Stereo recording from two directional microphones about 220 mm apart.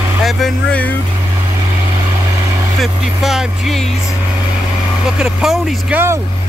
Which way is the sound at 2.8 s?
Centre (ahead or behind).